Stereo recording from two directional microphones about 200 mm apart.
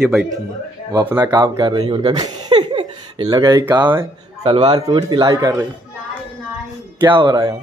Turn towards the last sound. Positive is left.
turn(degrees=-20)  # may be behind; listen again after turning